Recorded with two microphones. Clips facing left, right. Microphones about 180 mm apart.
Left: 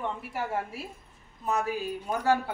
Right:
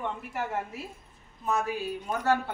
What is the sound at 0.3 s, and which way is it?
Speech, 10° left (ahead or behind).